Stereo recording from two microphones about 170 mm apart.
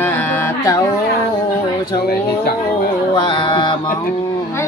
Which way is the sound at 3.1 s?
25° left (ahead or behind).